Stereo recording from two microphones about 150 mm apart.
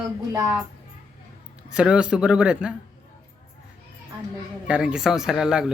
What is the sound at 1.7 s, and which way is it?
A man's voice, 5° right (ahead or behind).